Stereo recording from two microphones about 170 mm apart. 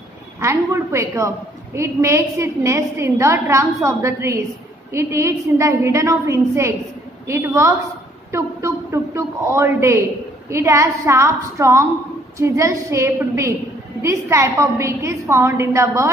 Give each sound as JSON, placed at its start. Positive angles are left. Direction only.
{"t": 0.4, "sound": "a woman's voice", "side_deg": -15}